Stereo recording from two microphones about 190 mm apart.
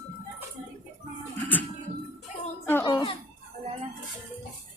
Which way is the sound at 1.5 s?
10° left (ahead or behind).